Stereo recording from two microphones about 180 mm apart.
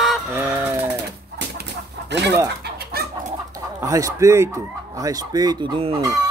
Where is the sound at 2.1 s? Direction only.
75° right (ahead or behind).